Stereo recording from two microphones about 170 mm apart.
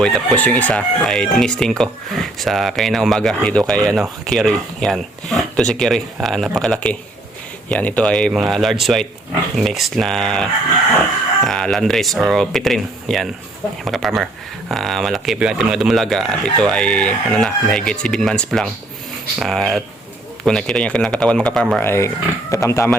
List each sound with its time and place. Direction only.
0.0 s speech: 5° left (ahead or behind)
21.8 s speech: 15° left (ahead or behind)